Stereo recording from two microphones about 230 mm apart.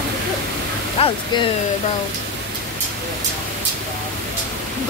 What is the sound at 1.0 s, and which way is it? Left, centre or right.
Speech, left.